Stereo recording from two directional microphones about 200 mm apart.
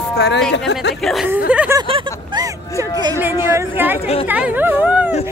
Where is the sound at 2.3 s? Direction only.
15° right (ahead or behind).